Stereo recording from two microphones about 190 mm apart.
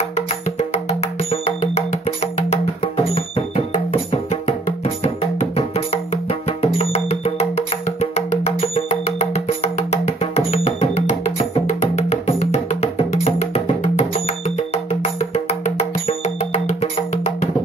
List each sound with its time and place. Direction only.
0.1 s music: 35° left (ahead or behind)